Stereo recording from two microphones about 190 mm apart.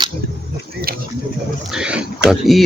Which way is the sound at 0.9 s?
50° right (ahead or behind).